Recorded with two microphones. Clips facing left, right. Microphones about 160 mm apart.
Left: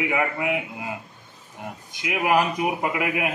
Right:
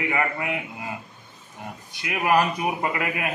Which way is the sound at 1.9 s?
10° left (ahead or behind).